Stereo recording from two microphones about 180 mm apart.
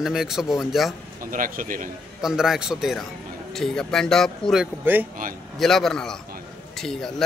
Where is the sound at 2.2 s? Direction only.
5° right (ahead or behind).